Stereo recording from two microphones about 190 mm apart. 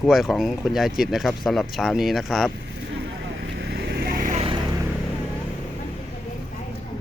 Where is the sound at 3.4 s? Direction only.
60° right (ahead or behind); by 4.4 s 45° right (ahead or behind).